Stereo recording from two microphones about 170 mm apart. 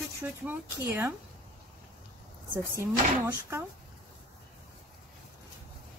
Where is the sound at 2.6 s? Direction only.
15° right (ahead or behind).